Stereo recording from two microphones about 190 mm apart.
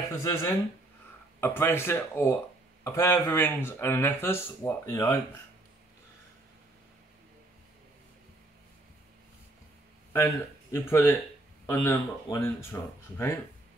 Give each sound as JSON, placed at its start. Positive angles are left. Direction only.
{"t": 0.1, "sound": "speech", "side_deg": 15}
{"t": 10.1, "sound": "speech", "side_deg": 15}